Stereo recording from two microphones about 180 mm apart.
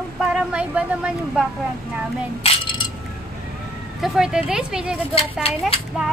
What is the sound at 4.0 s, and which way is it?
Speech, 5° right (ahead or behind).